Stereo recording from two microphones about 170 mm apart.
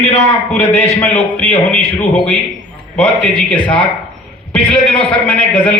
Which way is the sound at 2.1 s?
5° left (ahead or behind).